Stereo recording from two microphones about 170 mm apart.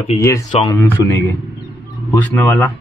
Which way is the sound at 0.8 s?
15° left (ahead or behind).